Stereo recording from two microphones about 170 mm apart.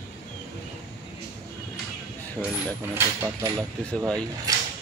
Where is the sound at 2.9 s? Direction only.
15° right (ahead or behind).